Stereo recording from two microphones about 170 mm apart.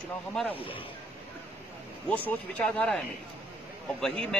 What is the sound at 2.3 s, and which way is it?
Speech, 10° left (ahead or behind).